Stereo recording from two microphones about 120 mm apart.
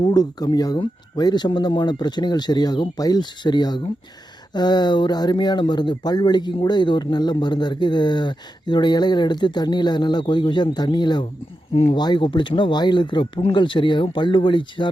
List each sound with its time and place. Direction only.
0.0 s speech: 35° left (ahead or behind)
11.7 s speech: 55° left (ahead or behind)
11.9 s speech: 40° left (ahead or behind)